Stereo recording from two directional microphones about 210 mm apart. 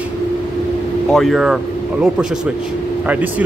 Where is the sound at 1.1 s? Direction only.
Centre (ahead or behind).